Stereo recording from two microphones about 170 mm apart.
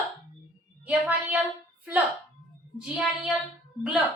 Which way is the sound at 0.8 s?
10° right (ahead or behind).